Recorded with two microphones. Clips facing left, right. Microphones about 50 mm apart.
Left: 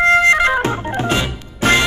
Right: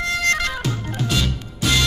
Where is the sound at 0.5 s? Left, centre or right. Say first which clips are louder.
Left 9 dB; left.